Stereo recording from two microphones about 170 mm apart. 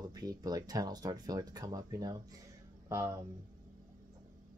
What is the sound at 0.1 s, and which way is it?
Speech, 20° right (ahead or behind).